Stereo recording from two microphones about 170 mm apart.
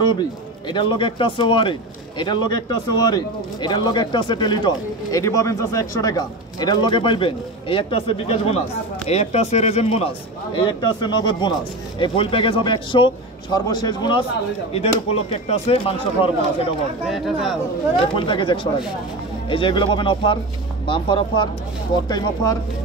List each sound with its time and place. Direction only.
0.0 s speech: 25° left (ahead or behind)
14.7 s speech: 35° left (ahead or behind)
17.1 s speech: centre (ahead or behind)
18.1 s speech: 30° left (ahead or behind)